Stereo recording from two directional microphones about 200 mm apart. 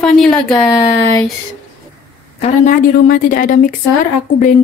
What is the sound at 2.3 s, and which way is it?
A woman's voice, 35° left (ahead or behind).